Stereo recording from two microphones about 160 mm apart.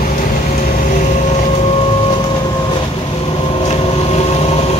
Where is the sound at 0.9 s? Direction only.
50° left (ahead or behind).